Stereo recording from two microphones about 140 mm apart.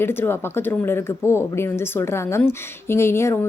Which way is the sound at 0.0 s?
15° left (ahead or behind).